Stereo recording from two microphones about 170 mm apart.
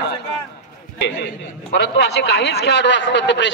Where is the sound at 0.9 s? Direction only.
90° left.